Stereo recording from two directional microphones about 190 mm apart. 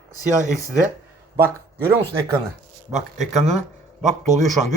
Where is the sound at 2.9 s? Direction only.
40° right (ahead or behind).